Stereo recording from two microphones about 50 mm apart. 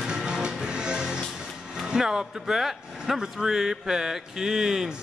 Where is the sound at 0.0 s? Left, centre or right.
Centre.